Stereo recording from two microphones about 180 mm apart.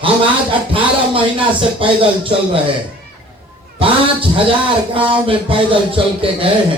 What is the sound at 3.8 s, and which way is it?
Speech, 30° right (ahead or behind).